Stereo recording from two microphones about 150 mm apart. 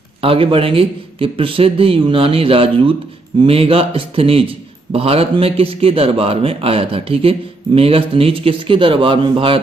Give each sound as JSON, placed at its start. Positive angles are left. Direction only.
{"t": 0.2, "sound": "a man's voice", "side_deg": -40}